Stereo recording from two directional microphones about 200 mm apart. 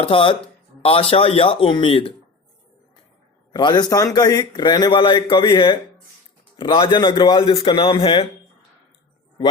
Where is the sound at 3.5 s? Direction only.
20° left (ahead or behind).